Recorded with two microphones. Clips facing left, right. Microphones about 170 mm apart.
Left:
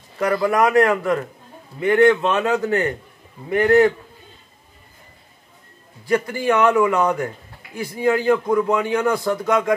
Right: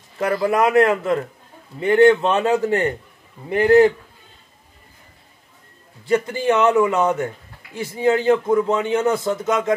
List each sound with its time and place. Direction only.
0.2 s a man's voice: 25° right (ahead or behind)
6.0 s a man's voice: 25° right (ahead or behind)